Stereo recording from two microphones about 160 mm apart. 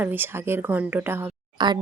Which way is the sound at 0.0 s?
15° right (ahead or behind).